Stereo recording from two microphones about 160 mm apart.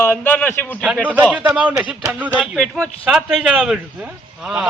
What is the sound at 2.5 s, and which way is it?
Speech, 5° left (ahead or behind).